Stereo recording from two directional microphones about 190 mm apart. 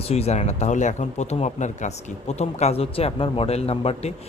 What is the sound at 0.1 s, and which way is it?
A man's voice, 35° left (ahead or behind).